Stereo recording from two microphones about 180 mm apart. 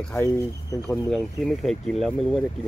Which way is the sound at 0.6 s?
20° left (ahead or behind).